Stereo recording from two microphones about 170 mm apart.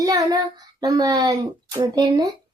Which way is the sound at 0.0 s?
20° right (ahead or behind).